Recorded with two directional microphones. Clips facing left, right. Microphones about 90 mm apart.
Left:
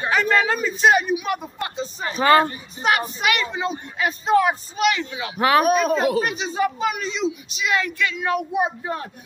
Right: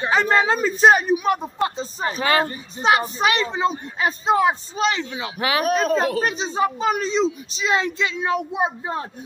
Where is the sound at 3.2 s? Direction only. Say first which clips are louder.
Right 3 dB; 30° right (ahead or behind).